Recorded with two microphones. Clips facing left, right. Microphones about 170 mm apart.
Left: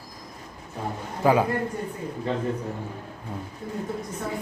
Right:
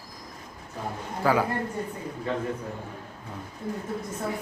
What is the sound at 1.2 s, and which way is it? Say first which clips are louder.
Speech: left 3 dB; 20° left (ahead or behind).